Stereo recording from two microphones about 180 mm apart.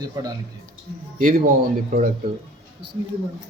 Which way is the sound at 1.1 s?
45° right (ahead or behind).